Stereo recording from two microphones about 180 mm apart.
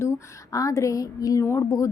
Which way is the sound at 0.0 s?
15° left (ahead or behind).